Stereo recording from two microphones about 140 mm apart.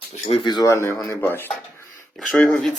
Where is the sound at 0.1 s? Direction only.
50° left (ahead or behind); by 1.5 s 15° left (ahead or behind).